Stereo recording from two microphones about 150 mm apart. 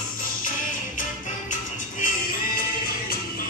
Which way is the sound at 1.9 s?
65° left (ahead or behind).